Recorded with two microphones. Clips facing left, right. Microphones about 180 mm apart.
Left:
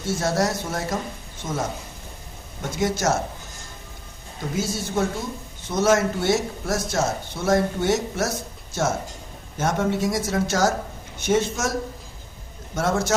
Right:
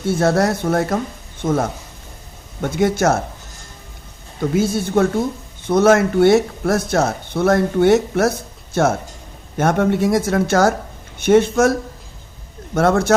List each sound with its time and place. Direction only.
0.0 s speech: 55° right (ahead or behind)
4.4 s speech: 60° right (ahead or behind)
12.7 s speech: 60° right (ahead or behind)